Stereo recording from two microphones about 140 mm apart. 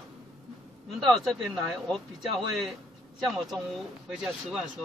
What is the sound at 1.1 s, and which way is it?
Speech, 5° left (ahead or behind).